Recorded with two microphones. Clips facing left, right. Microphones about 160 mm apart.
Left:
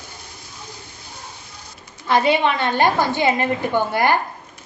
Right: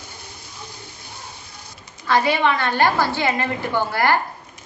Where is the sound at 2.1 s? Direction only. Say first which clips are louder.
Left 1 dB; 20° left (ahead or behind).